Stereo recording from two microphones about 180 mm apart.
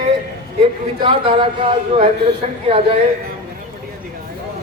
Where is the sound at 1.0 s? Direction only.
30° right (ahead or behind).